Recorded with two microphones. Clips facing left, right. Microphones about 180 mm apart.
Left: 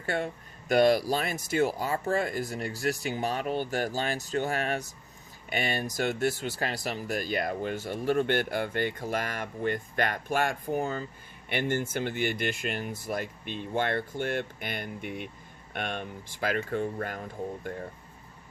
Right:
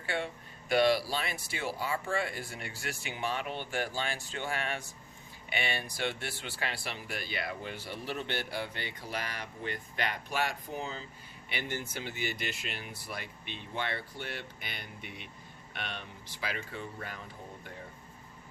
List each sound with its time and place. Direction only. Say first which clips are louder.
0.0 s speech: left 4 dB; 45° left (ahead or behind)